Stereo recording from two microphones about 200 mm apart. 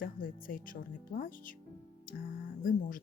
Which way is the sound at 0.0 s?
45° left (ahead or behind).